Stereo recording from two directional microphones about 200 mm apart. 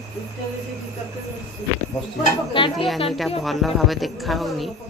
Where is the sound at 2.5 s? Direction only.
25° left (ahead or behind).